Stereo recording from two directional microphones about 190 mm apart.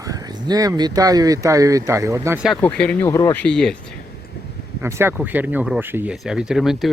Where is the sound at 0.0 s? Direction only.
20° right (ahead or behind).